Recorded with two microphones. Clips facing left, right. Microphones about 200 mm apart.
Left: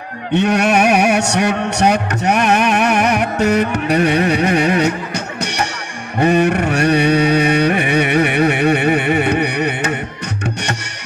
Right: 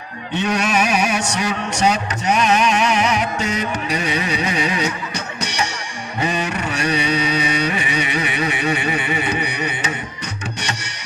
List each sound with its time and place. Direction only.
0.3 s a sound: 60° left (ahead or behind)
6.1 s carnatic music: 60° left (ahead or behind)
10.4 s music: 60° left (ahead or behind)